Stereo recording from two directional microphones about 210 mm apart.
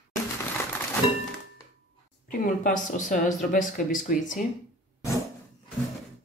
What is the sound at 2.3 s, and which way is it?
Speech, 40° left (ahead or behind).